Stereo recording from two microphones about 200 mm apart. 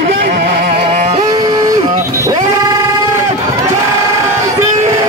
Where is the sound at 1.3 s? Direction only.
20° right (ahead or behind).